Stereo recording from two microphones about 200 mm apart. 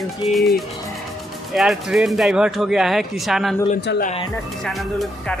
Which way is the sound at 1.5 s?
Centre (ahead or behind).